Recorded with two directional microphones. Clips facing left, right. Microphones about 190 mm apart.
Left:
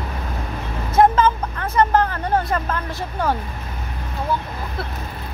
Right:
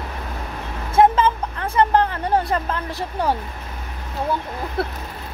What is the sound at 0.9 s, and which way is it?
Vehicle, 30° right (ahead or behind).